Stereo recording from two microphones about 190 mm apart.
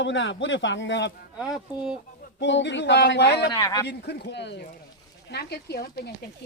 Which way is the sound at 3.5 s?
20° left (ahead or behind).